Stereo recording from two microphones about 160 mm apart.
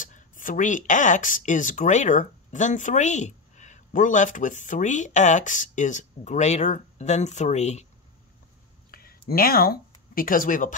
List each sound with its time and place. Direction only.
0.0 s speech: 55° left (ahead or behind)
9.3 s speech: 65° left (ahead or behind)